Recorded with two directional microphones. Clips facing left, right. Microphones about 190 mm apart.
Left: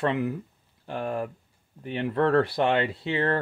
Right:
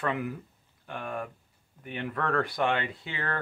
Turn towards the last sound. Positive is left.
turn(degrees=30)  # may be behind; listen again after turning